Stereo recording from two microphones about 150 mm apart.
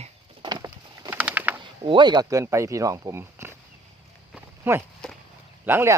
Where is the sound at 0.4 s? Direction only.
30° right (ahead or behind).